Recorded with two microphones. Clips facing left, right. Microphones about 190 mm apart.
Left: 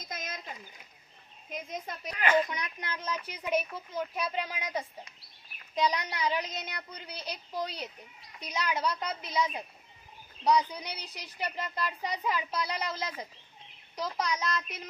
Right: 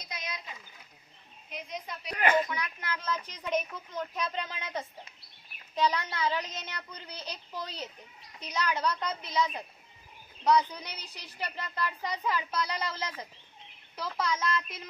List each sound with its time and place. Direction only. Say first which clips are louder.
0.0 s a sound: left 1 dB; 45° left (ahead or behind)
1.5 s a woman's voice: left 2 dB; 45° left (ahead or behind)
2.4 s speech: right 2 dB; 15° left (ahead or behind)